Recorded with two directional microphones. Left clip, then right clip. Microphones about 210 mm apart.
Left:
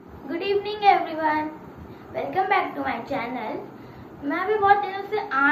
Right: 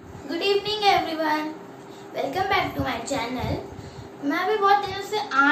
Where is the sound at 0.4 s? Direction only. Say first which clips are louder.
Right 1 dB; 20° right (ahead or behind).